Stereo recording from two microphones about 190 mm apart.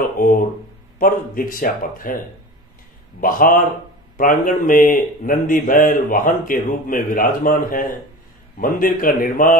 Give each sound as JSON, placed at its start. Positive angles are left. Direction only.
{"t": 0.9, "sound": "a man's voice", "side_deg": 45}
{"t": 3.2, "sound": "a man's voice", "side_deg": 45}